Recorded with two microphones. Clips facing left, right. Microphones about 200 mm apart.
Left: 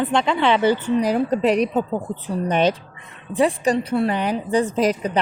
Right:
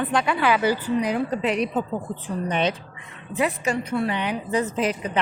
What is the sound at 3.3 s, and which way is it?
A woman's voice, 30° left (ahead or behind).